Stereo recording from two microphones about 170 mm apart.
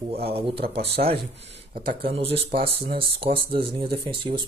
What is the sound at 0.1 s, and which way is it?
Speech, 35° right (ahead or behind).